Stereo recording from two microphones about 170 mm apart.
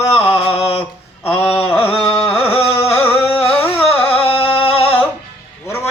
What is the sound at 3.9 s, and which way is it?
Music, 35° left (ahead or behind).